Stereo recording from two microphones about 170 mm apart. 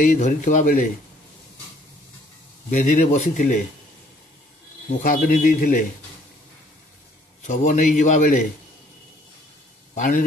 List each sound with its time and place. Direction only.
0.0 s a man's voice: 50° left (ahead or behind)
2.7 s a man's voice: 50° left (ahead or behind)
5.0 s a man's voice: 55° left (ahead or behind)
7.4 s a man's voice: 50° left (ahead or behind)
9.9 s a man's voice: 50° left (ahead or behind)